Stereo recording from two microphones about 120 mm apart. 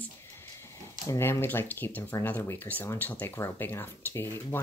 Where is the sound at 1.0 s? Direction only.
25° left (ahead or behind).